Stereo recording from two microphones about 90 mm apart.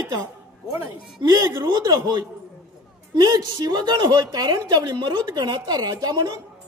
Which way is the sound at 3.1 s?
50° right (ahead or behind).